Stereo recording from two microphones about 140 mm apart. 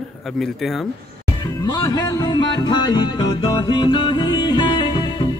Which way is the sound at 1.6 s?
30° left (ahead or behind).